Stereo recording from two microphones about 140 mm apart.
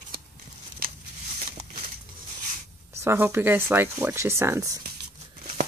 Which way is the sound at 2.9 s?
20° right (ahead or behind).